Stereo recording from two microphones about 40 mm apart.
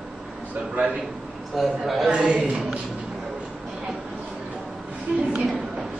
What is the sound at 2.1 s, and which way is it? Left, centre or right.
Speech, right.